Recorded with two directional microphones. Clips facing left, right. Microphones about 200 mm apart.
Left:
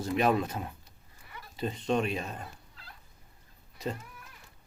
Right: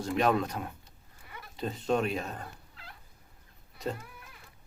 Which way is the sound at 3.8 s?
Centre (ahead or behind).